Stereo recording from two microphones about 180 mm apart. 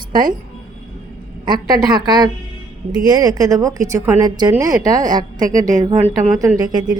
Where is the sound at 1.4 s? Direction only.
25° right (ahead or behind).